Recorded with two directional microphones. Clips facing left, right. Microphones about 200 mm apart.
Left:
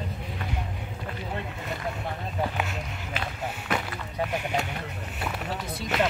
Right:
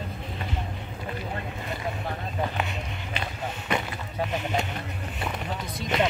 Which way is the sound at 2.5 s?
5° left (ahead or behind).